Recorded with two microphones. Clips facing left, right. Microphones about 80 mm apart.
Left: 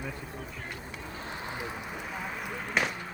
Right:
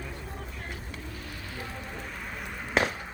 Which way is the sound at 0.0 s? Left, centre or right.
Centre.